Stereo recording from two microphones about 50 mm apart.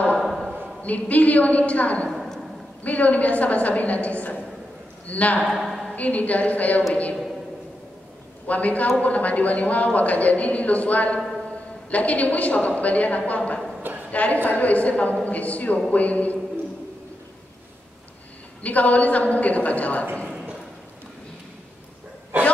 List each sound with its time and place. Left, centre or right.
0.2 s a sound: centre
0.8 s a woman's voice: left
5.4 s a woman's voice: centre
5.9 s a woman's voice: left
8.5 s a woman's voice: left
18.6 s a woman's voice: left